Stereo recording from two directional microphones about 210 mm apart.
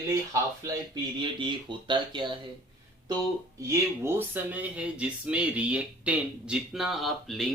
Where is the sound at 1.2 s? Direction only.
20° right (ahead or behind).